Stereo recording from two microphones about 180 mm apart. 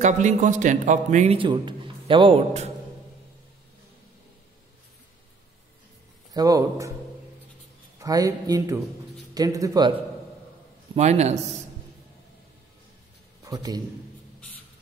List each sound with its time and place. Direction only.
0.0 s a man's voice: 45° right (ahead or behind)
6.3 s speech: 20° right (ahead or behind)
8.0 s speech: 20° right (ahead or behind)
11.0 s a man's voice: 40° right (ahead or behind)
13.4 s a man's voice: 20° right (ahead or behind)